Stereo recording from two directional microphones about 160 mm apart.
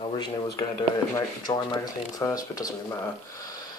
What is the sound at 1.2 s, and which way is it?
Speech, 25° left (ahead or behind).